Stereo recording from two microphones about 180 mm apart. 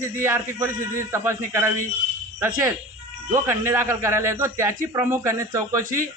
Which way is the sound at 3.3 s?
15° right (ahead or behind).